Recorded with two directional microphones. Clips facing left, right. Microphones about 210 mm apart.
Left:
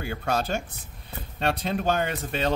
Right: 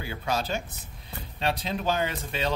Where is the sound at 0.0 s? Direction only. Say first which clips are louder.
Left 3 dB; 50° left (ahead or behind).